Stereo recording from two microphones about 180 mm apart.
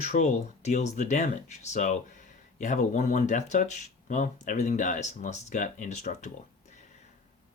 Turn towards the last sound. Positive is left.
turn(degrees=40)  # may be behind; listen again after turning